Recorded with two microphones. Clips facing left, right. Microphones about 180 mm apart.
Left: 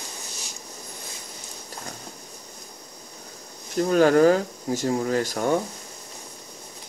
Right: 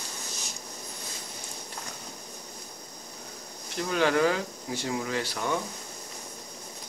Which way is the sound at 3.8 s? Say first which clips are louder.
Left 8 dB; 45° left (ahead or behind).